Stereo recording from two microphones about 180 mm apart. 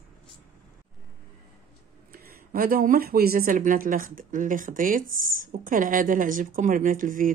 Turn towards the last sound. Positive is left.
turn(degrees=-50)  # may be behind; listen again after turning